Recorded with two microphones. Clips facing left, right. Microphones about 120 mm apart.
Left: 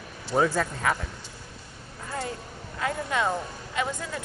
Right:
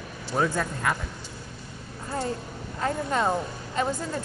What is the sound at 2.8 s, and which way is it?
A woman's voice, 35° right (ahead or behind).